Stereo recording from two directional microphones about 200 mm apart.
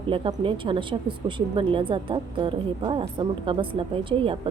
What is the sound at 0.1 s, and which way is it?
A woman's voice, 25° right (ahead or behind).